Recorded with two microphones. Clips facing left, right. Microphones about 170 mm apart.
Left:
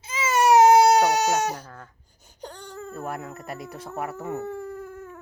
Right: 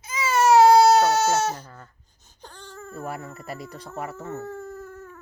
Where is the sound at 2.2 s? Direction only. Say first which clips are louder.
Left 5 dB; 15° left (ahead or behind).